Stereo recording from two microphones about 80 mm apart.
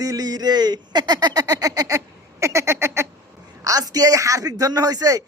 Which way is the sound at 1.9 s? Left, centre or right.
Right.